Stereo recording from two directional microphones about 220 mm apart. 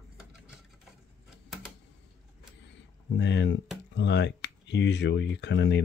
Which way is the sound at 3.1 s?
50° left (ahead or behind).